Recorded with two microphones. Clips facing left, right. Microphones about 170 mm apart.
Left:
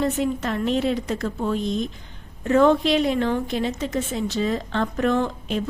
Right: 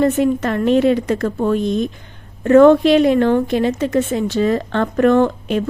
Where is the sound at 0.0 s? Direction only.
60° right (ahead or behind).